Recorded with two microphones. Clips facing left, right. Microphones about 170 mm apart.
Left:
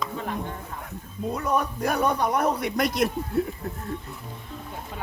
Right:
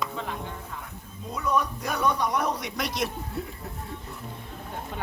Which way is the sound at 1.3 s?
55° left (ahead or behind).